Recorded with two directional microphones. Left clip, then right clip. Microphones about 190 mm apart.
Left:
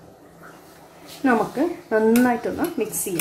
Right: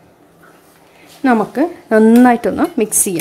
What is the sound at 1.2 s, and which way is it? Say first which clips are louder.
Speech: right 6 dB; 55° right (ahead or behind).